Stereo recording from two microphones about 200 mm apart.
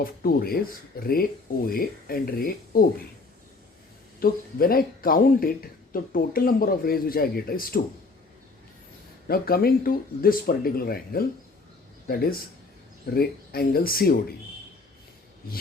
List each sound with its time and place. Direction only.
0.0 s speech: 45° left (ahead or behind)
4.2 s speech: 45° left (ahead or behind)
9.2 s speech: 50° left (ahead or behind)